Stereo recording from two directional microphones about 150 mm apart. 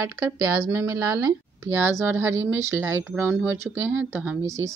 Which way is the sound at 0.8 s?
20° right (ahead or behind).